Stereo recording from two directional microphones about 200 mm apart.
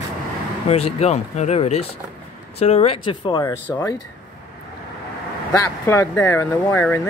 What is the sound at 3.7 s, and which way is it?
Speech, 10° left (ahead or behind).